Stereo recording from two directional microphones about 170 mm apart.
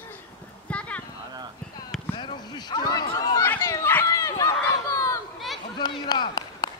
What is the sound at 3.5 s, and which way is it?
Dog, 15° left (ahead or behind).